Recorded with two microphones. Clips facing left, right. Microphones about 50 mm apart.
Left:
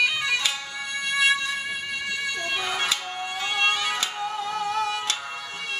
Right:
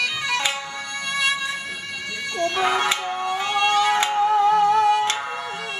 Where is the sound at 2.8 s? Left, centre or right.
Right.